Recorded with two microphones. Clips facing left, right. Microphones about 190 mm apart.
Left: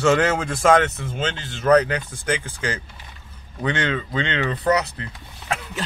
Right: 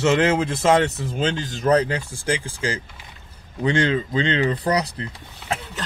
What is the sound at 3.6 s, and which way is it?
Speech, 30° right (ahead or behind).